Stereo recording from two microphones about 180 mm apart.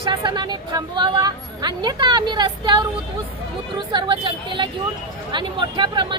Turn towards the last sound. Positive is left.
turn(degrees=-25)  # may be behind; listen again after turning